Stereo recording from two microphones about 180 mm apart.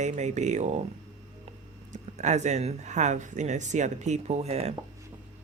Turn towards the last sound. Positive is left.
turn(degrees=-35)  # may be behind; listen again after turning